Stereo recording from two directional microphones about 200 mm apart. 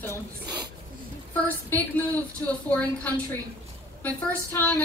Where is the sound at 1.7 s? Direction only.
10° left (ahead or behind).